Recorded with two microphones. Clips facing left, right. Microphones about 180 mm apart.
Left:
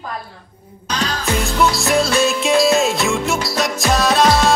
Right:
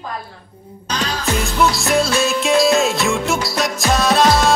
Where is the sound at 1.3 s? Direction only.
Centre (ahead or behind).